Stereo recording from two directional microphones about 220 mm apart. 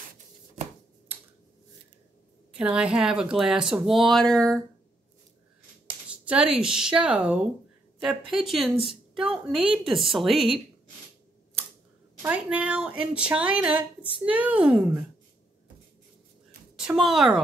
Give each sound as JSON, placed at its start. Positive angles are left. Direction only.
{"t": 2.5, "sound": "speech", "side_deg": -5}
{"t": 6.0, "sound": "a sound", "side_deg": -5}
{"t": 6.6, "sound": "speech", "side_deg": -5}
{"t": 12.2, "sound": "a child's voice", "side_deg": -5}
{"t": 16.7, "sound": "speech", "side_deg": 0}